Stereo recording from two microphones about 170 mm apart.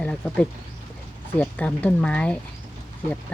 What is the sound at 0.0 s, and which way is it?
Speech, 10° left (ahead or behind).